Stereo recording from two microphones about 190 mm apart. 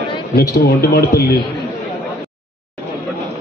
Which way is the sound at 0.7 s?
55° left (ahead or behind).